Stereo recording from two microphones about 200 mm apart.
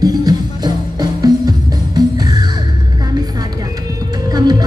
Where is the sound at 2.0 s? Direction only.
20° right (ahead or behind).